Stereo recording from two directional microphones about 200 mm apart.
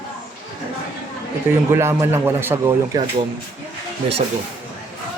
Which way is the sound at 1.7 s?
15° right (ahead or behind).